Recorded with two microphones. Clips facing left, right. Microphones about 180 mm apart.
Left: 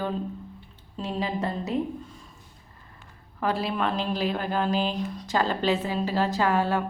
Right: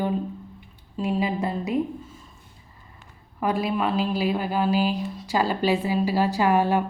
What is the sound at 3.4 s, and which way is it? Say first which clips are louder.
A woman's voice: right 2 dB; 15° right (ahead or behind).